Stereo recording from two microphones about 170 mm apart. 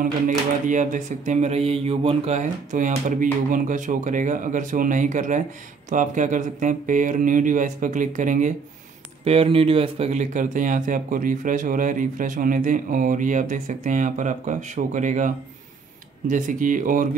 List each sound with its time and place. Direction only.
0.0 s speech: 50° right (ahead or behind)
9.2 s speech: 35° right (ahead or behind); by 17.1 s 50° right (ahead or behind)